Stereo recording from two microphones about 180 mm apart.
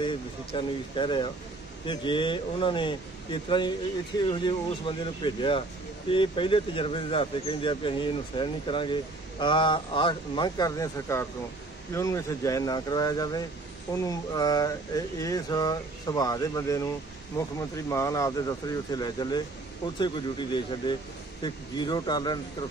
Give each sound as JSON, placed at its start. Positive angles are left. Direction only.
{"t": 0.0, "sound": "speech", "side_deg": 30}